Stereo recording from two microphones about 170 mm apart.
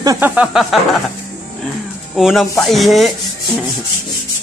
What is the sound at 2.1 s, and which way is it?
Rub, centre (ahead or behind).